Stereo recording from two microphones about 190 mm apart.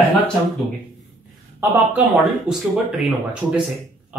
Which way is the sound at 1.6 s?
10° right (ahead or behind).